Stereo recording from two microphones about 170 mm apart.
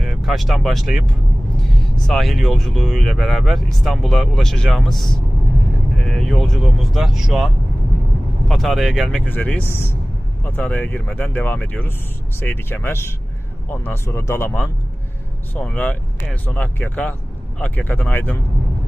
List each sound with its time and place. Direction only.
0.0 s speech: centre (ahead or behind)
2.0 s speech: centre (ahead or behind)